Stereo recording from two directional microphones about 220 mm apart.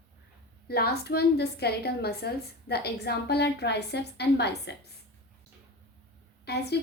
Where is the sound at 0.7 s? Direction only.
45° left (ahead or behind).